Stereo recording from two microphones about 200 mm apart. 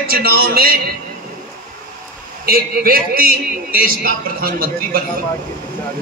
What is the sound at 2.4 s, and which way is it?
A man's voice, 50° right (ahead or behind).